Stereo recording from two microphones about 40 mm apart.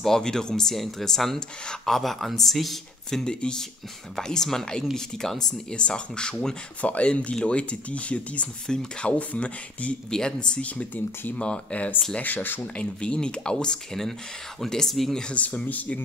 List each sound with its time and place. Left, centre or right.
0.0 s speech: centre
3.3 s speech: left
5.7 s speech: left
6.8 s speech: left
7.1 s speech: left
8.7 s speech: centre
9.0 s speech: left
10.1 s speech: left
10.6 s speech: left
12.2 s speech: left
12.7 s speech: left; by 15.1 s centre
15.3 s speech: left